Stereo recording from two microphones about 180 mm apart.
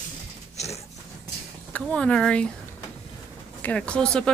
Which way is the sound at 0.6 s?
40° left (ahead or behind).